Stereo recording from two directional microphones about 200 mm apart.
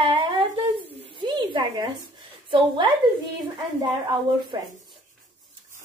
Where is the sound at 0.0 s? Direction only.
25° right (ahead or behind).